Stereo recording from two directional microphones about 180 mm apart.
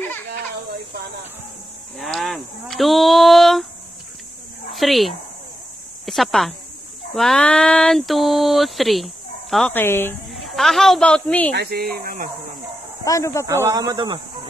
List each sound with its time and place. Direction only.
2.0 s a sound: centre (ahead or behind)
4.7 s speech: centre (ahead or behind)
10.3 s a woman's voice: centre (ahead or behind)
11.5 s speech: 60° right (ahead or behind)
13.0 s speech: 15° left (ahead or behind)
13.5 s speech: 15° right (ahead or behind)